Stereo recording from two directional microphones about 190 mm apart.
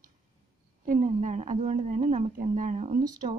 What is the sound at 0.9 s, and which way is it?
A woman's voice, 40° right (ahead or behind).